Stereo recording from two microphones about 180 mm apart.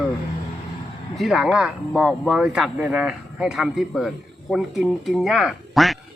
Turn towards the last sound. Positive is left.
turn(degrees=0)  # may be behind; listen again after turning